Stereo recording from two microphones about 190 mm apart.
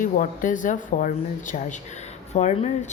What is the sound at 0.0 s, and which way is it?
Speech, 45° left (ahead or behind).